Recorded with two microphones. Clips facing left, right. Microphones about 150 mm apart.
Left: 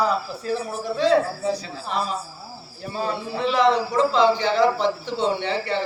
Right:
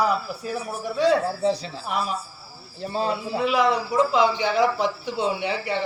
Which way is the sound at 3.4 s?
10° right (ahead or behind).